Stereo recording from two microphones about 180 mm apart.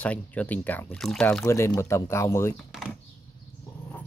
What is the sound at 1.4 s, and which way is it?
Speech, 15° left (ahead or behind).